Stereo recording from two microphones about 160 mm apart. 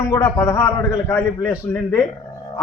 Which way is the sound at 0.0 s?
20° left (ahead or behind).